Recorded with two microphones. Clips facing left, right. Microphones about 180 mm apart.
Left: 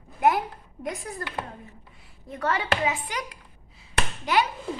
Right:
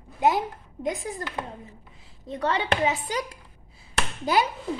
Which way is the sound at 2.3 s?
20° right (ahead or behind).